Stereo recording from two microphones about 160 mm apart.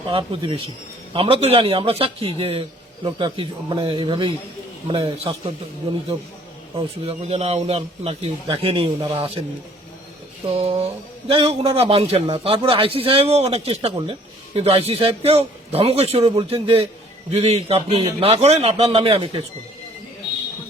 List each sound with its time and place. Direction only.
0.1 s a man's voice: 30° right (ahead or behind)
6.7 s a man's voice: 40° right (ahead or behind)
10.4 s a man's voice: 35° right (ahead or behind)